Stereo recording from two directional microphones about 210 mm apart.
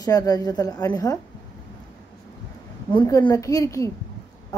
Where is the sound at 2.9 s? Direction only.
20° left (ahead or behind).